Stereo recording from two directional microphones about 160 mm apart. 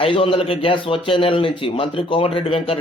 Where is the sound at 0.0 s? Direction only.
35° left (ahead or behind).